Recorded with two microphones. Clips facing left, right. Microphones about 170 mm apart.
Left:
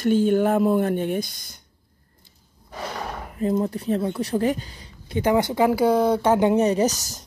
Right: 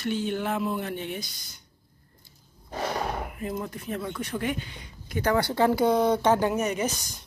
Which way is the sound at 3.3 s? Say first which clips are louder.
Left 10 dB; 35° left (ahead or behind).